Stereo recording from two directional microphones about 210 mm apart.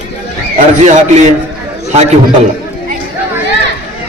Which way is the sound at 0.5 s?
35° right (ahead or behind).